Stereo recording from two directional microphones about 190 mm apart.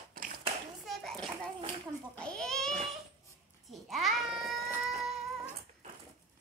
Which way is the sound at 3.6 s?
Centre (ahead or behind).